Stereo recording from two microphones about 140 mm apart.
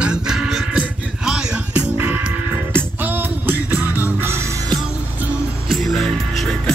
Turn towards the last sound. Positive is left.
turn(degrees=5)  # may be behind; listen again after turning